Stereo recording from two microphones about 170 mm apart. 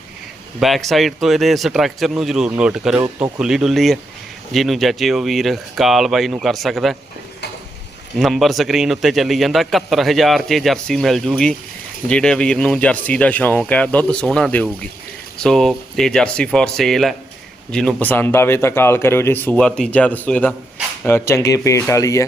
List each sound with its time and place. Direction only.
0.6 s a man's voice: centre (ahead or behind)
8.2 s a man's voice: centre (ahead or behind); by 22.2 s 20° left (ahead or behind)